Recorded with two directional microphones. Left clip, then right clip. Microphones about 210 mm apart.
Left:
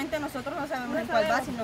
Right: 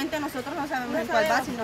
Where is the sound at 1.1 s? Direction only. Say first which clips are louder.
Right 2 dB; 5° right (ahead or behind).